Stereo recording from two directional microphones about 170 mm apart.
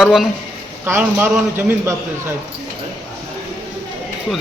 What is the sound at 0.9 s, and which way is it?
A man's voice, 15° right (ahead or behind).